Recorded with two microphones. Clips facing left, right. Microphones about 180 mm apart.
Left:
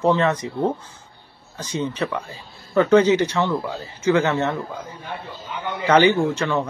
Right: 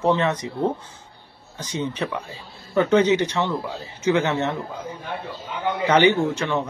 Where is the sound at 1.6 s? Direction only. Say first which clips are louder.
Left 2 dB; 20° right (ahead or behind).